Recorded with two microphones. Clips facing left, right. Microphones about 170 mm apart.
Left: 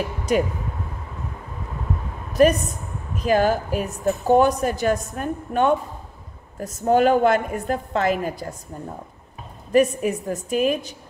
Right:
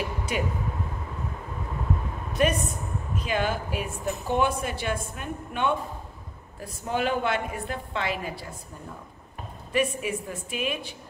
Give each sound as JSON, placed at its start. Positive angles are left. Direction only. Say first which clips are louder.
{"t": 0.3, "sound": "a woman's voice", "louder": "left 10 dB", "side_deg": 40}
{"t": 2.4, "sound": "a woman's voice", "louder": "left 8 dB", "side_deg": 40}